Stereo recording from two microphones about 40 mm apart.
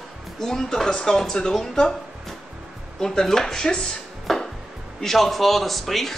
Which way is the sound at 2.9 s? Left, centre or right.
Centre.